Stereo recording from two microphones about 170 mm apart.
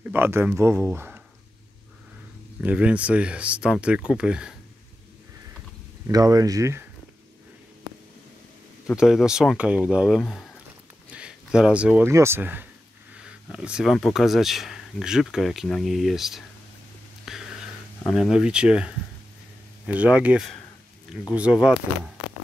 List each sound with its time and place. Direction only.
0.1 s speech: 15° right (ahead or behind)
2.6 s speech: 5° right (ahead or behind)
6.0 s speech: 20° right (ahead or behind)
8.8 s speech: centre (ahead or behind)
17.2 s a sound: 5° right (ahead or behind)
18.1 s speech: centre (ahead or behind)